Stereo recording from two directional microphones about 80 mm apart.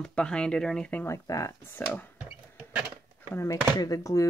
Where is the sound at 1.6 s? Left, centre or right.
Left.